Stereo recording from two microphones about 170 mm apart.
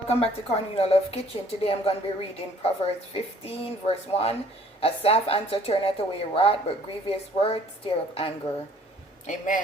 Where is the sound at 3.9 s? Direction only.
35° left (ahead or behind).